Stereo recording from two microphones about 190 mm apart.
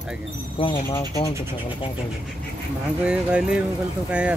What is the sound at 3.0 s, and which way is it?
Speech, 5° right (ahead or behind).